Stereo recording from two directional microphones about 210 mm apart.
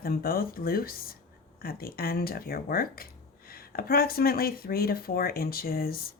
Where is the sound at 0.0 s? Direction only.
45° left (ahead or behind).